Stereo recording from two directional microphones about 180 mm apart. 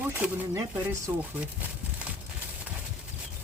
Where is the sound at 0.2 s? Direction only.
5° right (ahead or behind).